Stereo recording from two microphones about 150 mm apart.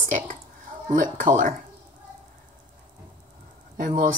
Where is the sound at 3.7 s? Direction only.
60° right (ahead or behind).